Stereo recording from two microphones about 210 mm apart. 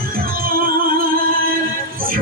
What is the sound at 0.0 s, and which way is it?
Music, 45° right (ahead or behind).